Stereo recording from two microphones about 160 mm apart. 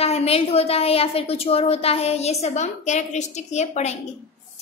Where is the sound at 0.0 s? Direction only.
40° left (ahead or behind).